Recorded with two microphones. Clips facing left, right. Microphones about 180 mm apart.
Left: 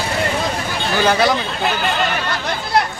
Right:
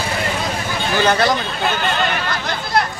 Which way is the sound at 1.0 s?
10° left (ahead or behind).